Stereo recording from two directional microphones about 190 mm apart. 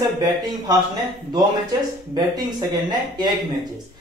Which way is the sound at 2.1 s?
20° right (ahead or behind).